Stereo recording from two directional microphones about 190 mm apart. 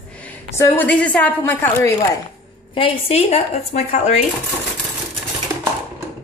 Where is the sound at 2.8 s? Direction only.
30° left (ahead or behind).